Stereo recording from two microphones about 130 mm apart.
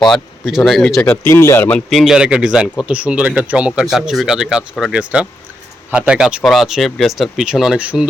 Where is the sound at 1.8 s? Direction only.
Centre (ahead or behind).